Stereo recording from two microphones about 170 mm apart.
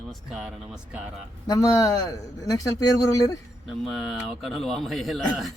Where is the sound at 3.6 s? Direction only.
Centre (ahead or behind).